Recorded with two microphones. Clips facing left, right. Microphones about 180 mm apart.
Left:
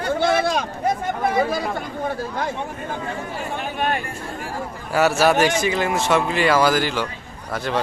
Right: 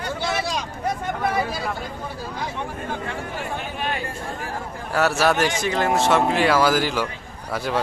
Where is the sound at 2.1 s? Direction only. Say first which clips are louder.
Left 8 dB; 55° left (ahead or behind).